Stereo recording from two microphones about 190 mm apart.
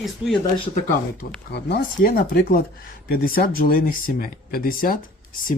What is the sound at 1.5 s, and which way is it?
Speech, 60° left (ahead or behind).